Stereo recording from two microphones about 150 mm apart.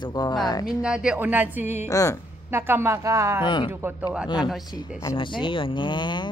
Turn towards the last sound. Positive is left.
turn(degrees=30)  # may be behind; listen again after turning